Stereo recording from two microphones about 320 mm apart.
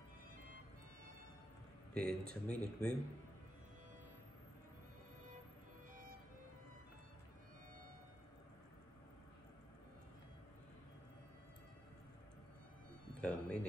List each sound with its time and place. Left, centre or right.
2.0 s speech: centre
13.2 s music: centre